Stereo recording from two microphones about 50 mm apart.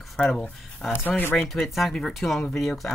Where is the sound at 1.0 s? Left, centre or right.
Left.